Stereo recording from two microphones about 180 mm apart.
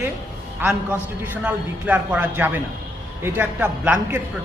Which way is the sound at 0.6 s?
5° right (ahead or behind).